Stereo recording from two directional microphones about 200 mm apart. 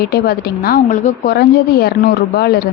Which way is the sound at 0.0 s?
50° left (ahead or behind).